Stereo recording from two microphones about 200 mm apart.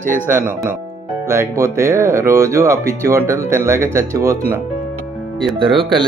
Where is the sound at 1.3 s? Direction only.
15° right (ahead or behind).